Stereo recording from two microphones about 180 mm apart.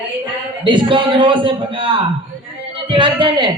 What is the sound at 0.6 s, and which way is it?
A man's voice, 25° right (ahead or behind).